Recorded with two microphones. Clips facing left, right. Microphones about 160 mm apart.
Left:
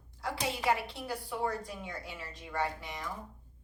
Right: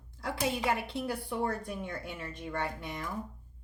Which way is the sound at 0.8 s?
55° right (ahead or behind).